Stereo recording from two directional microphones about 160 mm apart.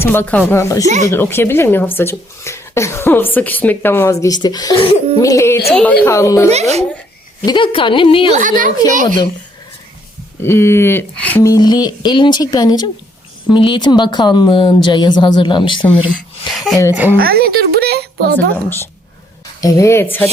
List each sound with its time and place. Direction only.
0.0 s speech: 15° left (ahead or behind)
6.5 s a child's voice: 40° right (ahead or behind)
7.4 s a woman's voice: 30° left (ahead or behind)
8.3 s speech: 55° right (ahead or behind)
10.4 s speech: 15° left (ahead or behind)
16.6 s a woman's voice: centre (ahead or behind)
17.2 s a woman's voice: 75° right (ahead or behind)
18.5 s speech: 15° left (ahead or behind)